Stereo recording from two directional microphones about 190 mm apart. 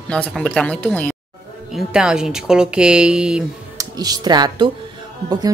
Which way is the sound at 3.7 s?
20° right (ahead or behind).